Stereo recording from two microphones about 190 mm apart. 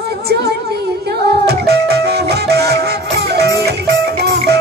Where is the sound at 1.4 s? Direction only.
60° right (ahead or behind).